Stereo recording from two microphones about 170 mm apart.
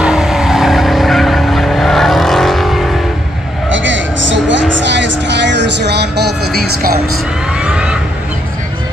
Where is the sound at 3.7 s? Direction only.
90° right; by 6.9 s 65° right (ahead or behind).